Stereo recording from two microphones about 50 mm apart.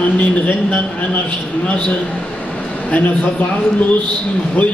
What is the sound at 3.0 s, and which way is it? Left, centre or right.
Speech, left.